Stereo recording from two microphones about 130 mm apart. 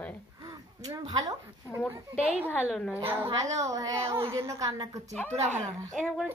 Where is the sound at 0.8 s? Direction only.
30° right (ahead or behind).